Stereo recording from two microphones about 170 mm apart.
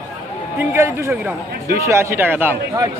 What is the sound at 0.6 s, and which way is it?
Speech, 15° right (ahead or behind).